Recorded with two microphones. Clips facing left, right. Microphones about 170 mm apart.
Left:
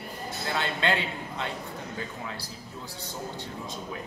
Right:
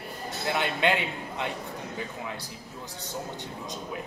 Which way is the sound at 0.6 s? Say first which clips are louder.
Right 2 dB; 15° right (ahead or behind).